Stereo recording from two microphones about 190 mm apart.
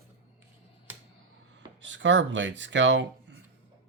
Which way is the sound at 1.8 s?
70° right (ahead or behind).